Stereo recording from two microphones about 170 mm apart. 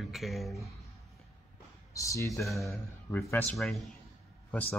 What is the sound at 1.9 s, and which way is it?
Speech, 20° left (ahead or behind).